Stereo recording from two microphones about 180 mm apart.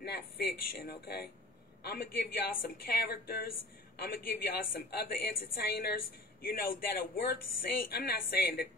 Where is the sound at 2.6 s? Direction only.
60° left (ahead or behind).